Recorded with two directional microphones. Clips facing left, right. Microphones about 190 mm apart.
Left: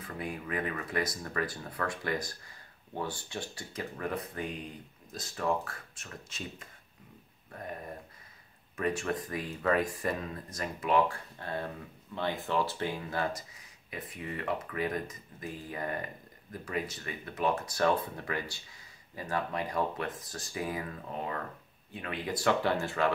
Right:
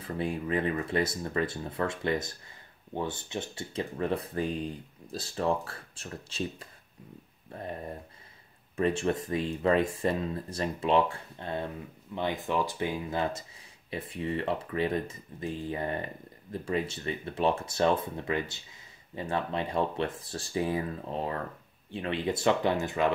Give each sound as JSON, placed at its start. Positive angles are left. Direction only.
{"t": 0.0, "sound": "speech", "side_deg": -30}
{"t": 8.7, "sound": "speech", "side_deg": -25}